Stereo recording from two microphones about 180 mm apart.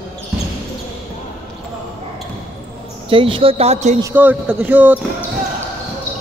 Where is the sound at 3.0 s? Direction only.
30° right (ahead or behind).